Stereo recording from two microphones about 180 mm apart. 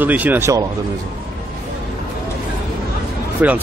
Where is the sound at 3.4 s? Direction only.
10° right (ahead or behind).